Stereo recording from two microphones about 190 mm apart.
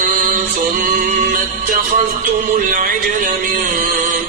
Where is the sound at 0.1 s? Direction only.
45° right (ahead or behind).